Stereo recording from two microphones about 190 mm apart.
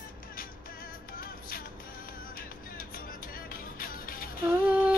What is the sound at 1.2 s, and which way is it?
Music, 50° left (ahead or behind).